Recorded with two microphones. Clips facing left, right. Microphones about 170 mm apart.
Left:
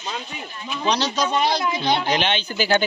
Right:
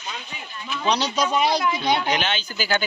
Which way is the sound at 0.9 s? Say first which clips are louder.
Even; 5° right (ahead or behind).